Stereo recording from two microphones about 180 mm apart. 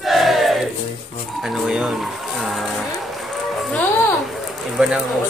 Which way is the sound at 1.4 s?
5° right (ahead or behind).